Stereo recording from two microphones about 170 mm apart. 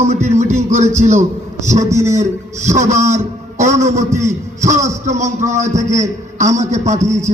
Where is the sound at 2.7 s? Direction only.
45° right (ahead or behind).